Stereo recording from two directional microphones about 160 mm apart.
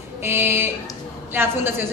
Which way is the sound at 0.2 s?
15° right (ahead or behind).